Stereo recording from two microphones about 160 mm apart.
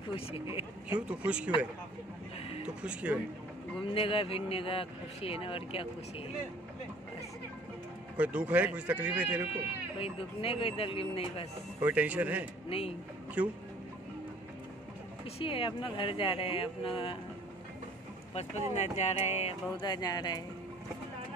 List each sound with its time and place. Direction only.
0.1 s speech: 35° left (ahead or behind)
0.8 s speech: 5° right (ahead or behind)
2.8 s speech: 5° right (ahead or behind)
3.9 s speech: 35° left (ahead or behind)
8.2 s speech: 10° right (ahead or behind)
9.9 s speech: 35° left (ahead or behind)
11.8 s speech: 10° right (ahead or behind)
12.6 s a man's voice: 35° left (ahead or behind)
13.4 s speech: 10° right (ahead or behind)
15.3 s speech: 35° left (ahead or behind)
18.3 s speech: 45° left (ahead or behind)
19.8 s speech: 25° left (ahead or behind)